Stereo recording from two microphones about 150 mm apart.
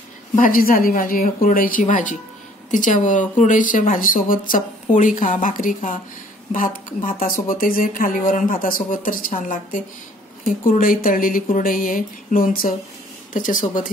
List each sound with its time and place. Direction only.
0.4 s speech: 70° left (ahead or behind)